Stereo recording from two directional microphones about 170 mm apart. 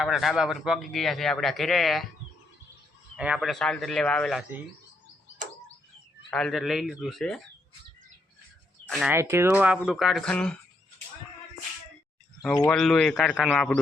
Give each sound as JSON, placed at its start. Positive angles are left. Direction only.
{"t": 0.0, "sound": "speech", "side_deg": 0}
{"t": 3.2, "sound": "speech", "side_deg": -5}
{"t": 6.3, "sound": "speech", "side_deg": 0}
{"t": 8.9, "sound": "speech", "side_deg": 0}
{"t": 9.1, "sound": "speech", "side_deg": -15}
{"t": 12.7, "sound": "speech", "side_deg": 0}